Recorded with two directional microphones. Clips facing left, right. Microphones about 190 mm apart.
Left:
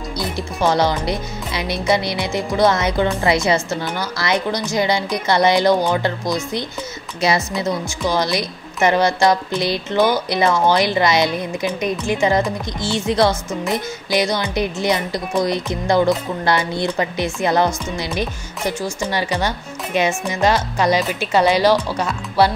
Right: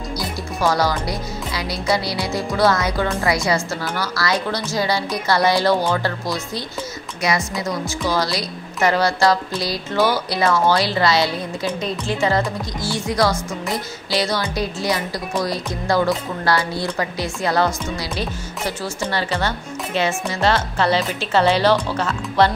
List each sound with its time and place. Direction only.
0.6 s speech: 20° left (ahead or behind)
7.2 s speech: 30° left (ahead or behind); by 22.5 s 10° left (ahead or behind)